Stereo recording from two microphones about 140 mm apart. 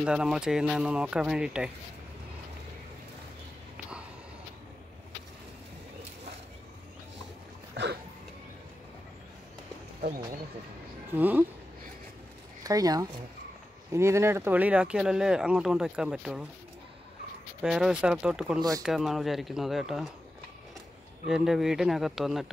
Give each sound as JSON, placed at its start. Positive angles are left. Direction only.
{"t": 0.0, "sound": "speech", "side_deg": -5}
{"t": 11.1, "sound": "speech", "side_deg": -15}
{"t": 12.6, "sound": "speech", "side_deg": -25}
{"t": 17.6, "sound": "speech", "side_deg": -5}
{"t": 21.3, "sound": "speech", "side_deg": -5}